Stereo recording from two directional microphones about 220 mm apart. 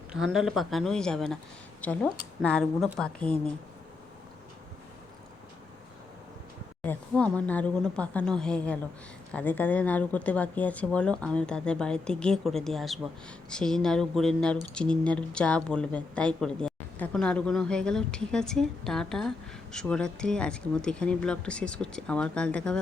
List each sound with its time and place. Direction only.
0.1 s a woman's voice: centre (ahead or behind)
6.8 s a woman's voice: 5° left (ahead or behind)